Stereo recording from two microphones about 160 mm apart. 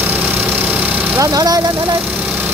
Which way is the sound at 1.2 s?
25° right (ahead or behind).